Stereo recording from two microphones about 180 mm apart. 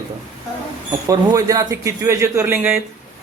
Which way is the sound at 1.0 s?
20° right (ahead or behind).